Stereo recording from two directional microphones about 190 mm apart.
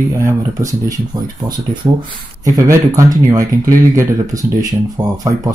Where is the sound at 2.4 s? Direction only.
15° right (ahead or behind).